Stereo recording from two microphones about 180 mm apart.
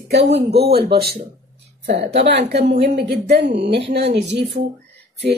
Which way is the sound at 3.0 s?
65° right (ahead or behind).